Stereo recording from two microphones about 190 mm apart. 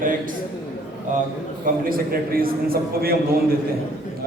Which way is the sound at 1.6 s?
50° right (ahead or behind).